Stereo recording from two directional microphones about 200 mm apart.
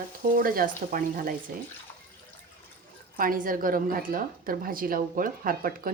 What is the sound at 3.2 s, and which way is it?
A woman's voice, 45° right (ahead or behind).